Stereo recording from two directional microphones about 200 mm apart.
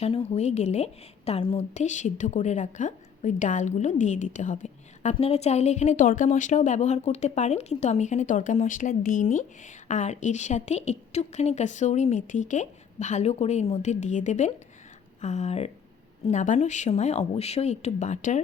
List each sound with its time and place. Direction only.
0.0 s a woman's voice: 30° left (ahead or behind)